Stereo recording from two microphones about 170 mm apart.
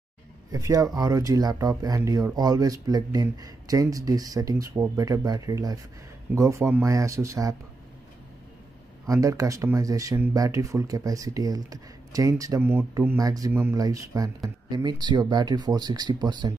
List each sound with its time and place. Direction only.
0.5 s speech: 20° right (ahead or behind)
9.0 s speech: 20° right (ahead or behind)